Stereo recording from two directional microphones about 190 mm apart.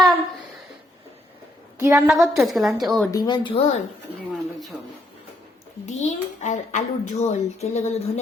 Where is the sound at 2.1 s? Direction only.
Centre (ahead or behind).